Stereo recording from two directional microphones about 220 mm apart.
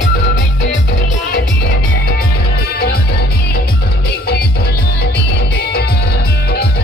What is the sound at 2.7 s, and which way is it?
Music, 45° left (ahead or behind).